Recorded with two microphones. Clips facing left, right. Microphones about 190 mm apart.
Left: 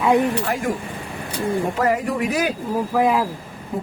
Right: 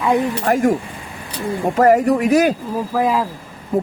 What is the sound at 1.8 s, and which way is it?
Speech, 45° right (ahead or behind).